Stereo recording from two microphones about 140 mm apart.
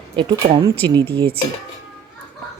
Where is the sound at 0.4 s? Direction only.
35° right (ahead or behind).